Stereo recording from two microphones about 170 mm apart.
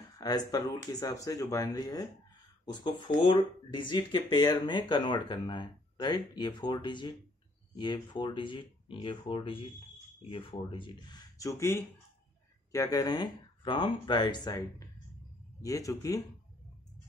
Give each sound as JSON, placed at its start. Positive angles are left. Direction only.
{"t": 0.2, "sound": "speech", "side_deg": 20}